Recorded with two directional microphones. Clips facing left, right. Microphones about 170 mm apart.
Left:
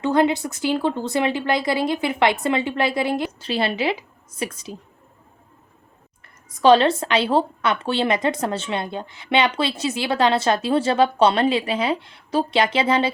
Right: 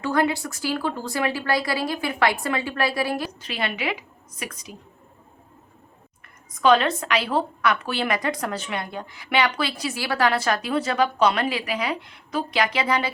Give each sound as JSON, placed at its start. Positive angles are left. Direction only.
{"t": 0.0, "sound": "a woman's voice", "side_deg": 20}
{"t": 6.5, "sound": "a woman's voice", "side_deg": 30}